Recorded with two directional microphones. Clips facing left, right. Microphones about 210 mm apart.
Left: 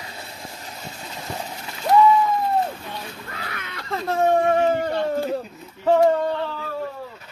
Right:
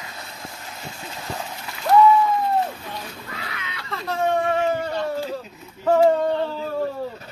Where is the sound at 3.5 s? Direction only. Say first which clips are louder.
Left 4 dB; 50° left (ahead or behind).